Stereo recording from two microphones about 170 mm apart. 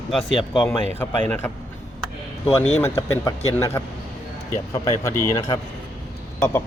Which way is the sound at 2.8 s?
15° left (ahead or behind).